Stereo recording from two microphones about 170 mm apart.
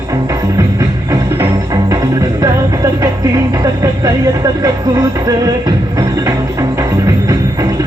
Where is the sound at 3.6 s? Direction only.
20° right (ahead or behind).